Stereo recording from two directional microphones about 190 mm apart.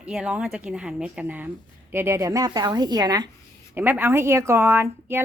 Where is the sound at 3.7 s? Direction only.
10° right (ahead or behind).